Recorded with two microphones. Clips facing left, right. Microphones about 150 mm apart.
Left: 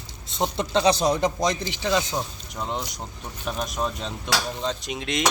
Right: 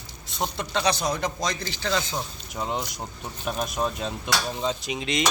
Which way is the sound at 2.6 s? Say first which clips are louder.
Right 1 dB; 5° right (ahead or behind).